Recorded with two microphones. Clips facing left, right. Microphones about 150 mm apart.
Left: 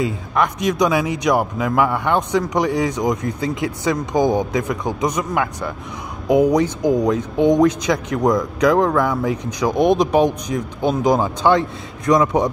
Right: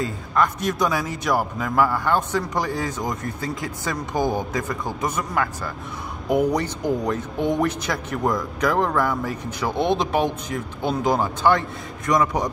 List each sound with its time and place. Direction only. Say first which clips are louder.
0.0 s a man's voice: left 3 dB; 15° left (ahead or behind)